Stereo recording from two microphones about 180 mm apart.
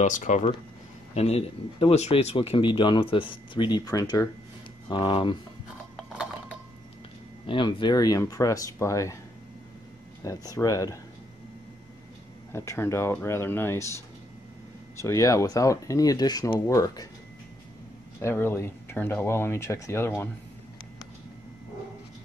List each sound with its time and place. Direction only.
0.0 s speech: 45° left (ahead or behind); by 5.4 s 25° left (ahead or behind)
5.9 s a sound: centre (ahead or behind)
7.4 s speech: 25° left (ahead or behind)
10.2 s speech: 20° left (ahead or behind)
12.5 s speech: 15° left (ahead or behind)
18.2 s speech: 15° left (ahead or behind)